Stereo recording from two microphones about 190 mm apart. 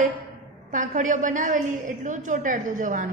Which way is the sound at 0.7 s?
40° right (ahead or behind).